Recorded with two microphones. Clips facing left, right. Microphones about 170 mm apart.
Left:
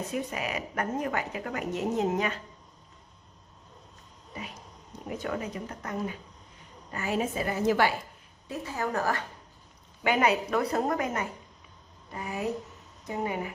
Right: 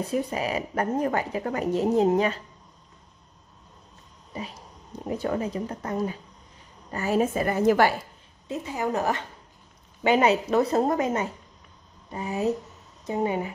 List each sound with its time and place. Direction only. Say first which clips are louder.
0.0 s speech: right 5 dB; 35° right (ahead or behind)
4.3 s a woman's voice: right 5 dB; 30° right (ahead or behind); by 7.9 s 50° right (ahead or behind)
8.5 s a woman's voice: right 4 dB; 20° right (ahead or behind)